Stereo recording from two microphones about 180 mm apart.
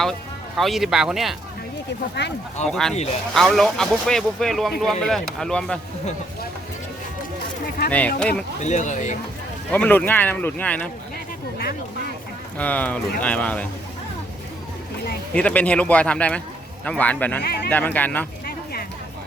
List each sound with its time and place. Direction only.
0.0 s speech: centre (ahead or behind)
2.2 s speech: 75° left (ahead or behind)
2.6 s speech: 5° left (ahead or behind)
7.9 s speech: 10° left (ahead or behind)
8.6 s speech: 40° left (ahead or behind)
9.7 s speech: 10° left (ahead or behind)
12.5 s speech: 10° left (ahead or behind)
15.3 s speech: 5° left (ahead or behind)
17.4 s speech: 60° left (ahead or behind)
17.7 s speech: 10° left (ahead or behind)